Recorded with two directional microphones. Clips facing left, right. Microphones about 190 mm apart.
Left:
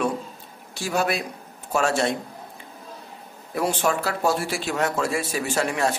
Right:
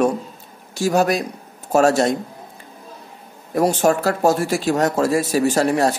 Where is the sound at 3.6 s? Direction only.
40° right (ahead or behind).